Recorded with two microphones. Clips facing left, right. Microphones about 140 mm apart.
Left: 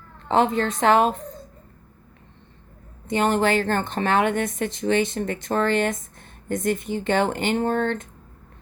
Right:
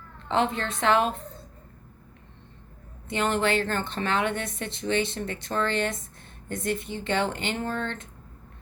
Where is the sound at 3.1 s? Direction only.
40° left (ahead or behind).